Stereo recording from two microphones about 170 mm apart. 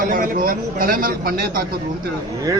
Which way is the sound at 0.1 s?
55° right (ahead or behind).